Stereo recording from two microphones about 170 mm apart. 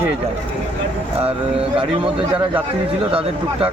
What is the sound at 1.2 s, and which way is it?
Speech, 30° right (ahead or behind).